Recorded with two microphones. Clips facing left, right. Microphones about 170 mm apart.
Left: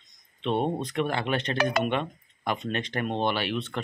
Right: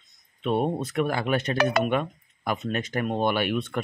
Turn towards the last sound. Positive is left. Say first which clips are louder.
# right 3 dB
turn(degrees=-10)  # may be behind; listen again after turning